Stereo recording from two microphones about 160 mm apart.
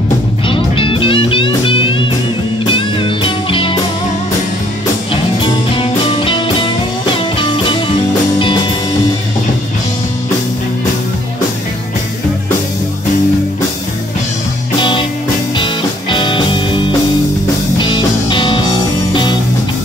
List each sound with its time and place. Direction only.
0.5 s music: 35° left (ahead or behind)
5.4 s music: 35° left (ahead or behind)
14.8 s music: 30° left (ahead or behind)